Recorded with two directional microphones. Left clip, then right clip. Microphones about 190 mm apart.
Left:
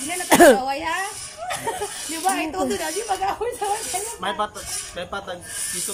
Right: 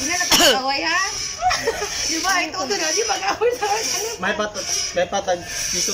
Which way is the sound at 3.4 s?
30° left (ahead or behind).